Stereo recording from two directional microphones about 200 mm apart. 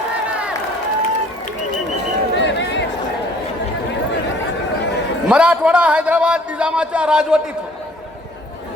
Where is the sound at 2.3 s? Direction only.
65° left (ahead or behind).